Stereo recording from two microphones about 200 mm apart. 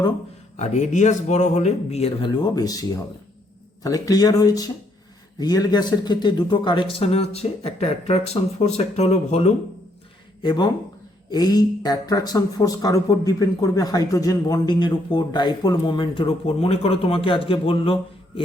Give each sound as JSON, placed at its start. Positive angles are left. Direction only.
{"t": 0.5, "sound": "speech", "side_deg": 35}
{"t": 3.8, "sound": "speech", "side_deg": 20}
{"t": 10.4, "sound": "speech", "side_deg": 20}